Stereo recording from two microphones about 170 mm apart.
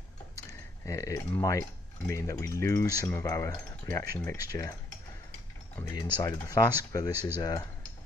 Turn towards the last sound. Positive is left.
turn(degrees=20)  # may be behind; listen again after turning